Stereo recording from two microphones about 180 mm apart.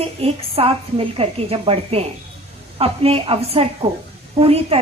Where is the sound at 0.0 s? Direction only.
35° right (ahead or behind).